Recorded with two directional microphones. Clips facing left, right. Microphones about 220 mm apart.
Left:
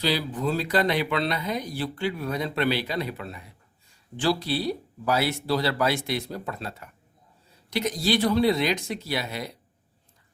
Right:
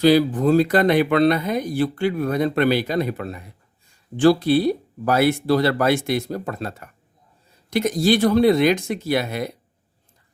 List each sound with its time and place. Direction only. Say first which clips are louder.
0.0 s speech: right 11 dB; 50° right (ahead or behind)